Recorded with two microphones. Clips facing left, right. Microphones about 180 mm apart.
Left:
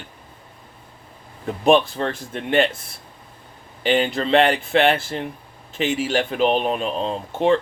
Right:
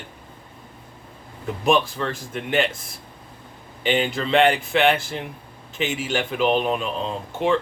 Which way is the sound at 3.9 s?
35° left (ahead or behind).